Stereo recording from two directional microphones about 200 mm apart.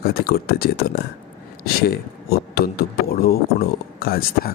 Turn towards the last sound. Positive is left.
turn(degrees=50)  # may be behind; listen again after turning